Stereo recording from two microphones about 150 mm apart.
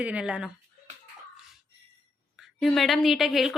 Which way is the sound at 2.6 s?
Centre (ahead or behind).